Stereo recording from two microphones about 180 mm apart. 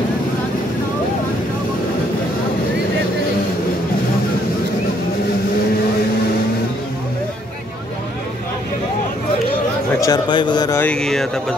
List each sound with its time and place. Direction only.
9.9 s a man's voice: 20° left (ahead or behind)
10.8 s speech: 5° left (ahead or behind)